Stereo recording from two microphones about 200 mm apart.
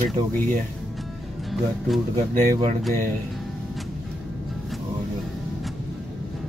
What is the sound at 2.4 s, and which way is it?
Speech, 35° right (ahead or behind).